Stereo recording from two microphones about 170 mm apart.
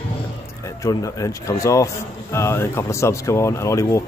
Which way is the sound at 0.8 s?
20° left (ahead or behind).